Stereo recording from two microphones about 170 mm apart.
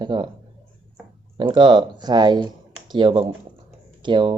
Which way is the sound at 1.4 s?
25° right (ahead or behind).